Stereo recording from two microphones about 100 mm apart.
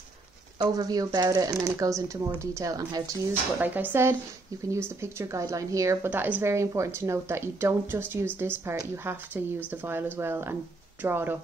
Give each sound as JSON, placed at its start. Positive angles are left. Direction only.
{"t": 0.6, "sound": "speech", "side_deg": -40}
{"t": 3.5, "sound": "speech", "side_deg": -20}
{"t": 6.0, "sound": "speech", "side_deg": -20}
{"t": 6.4, "sound": "speech", "side_deg": -30}